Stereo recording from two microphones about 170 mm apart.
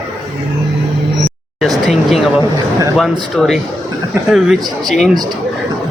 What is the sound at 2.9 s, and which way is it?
Speech, centre (ahead or behind).